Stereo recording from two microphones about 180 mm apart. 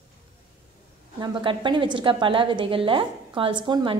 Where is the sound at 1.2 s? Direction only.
25° right (ahead or behind).